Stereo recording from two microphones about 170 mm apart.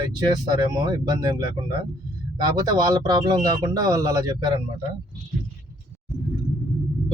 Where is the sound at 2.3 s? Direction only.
25° right (ahead or behind).